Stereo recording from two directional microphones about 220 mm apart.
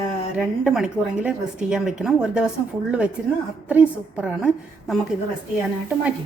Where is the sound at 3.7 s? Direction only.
5° right (ahead or behind).